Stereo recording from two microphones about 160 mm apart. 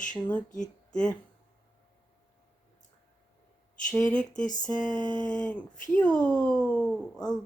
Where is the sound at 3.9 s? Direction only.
5° left (ahead or behind).